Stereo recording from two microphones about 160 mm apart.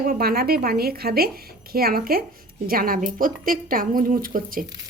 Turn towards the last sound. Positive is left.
turn(degrees=-60)  # may be behind; listen again after turning